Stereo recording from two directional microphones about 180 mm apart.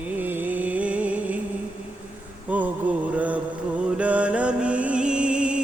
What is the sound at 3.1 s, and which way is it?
Mantra, 10° right (ahead or behind).